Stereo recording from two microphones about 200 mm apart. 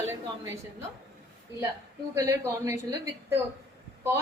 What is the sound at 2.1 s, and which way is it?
A woman's voice, 15° right (ahead or behind).